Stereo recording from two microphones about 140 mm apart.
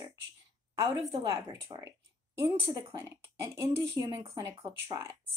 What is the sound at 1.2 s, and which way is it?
A woman's voice, 25° right (ahead or behind).